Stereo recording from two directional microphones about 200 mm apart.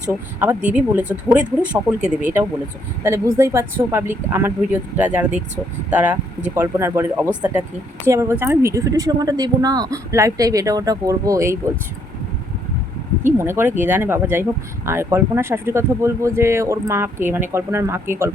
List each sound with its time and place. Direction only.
0.1 s speech: 10° right (ahead or behind)
13.2 s speech: 10° right (ahead or behind)